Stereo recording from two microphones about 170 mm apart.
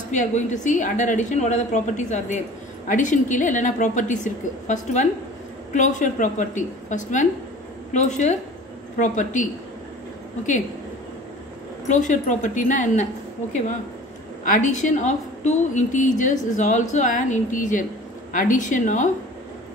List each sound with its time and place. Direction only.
0.1 s a woman's voice: 45° left (ahead or behind)
11.9 s a woman's voice: 50° left (ahead or behind)
14.4 s a woman's voice: 50° left (ahead or behind)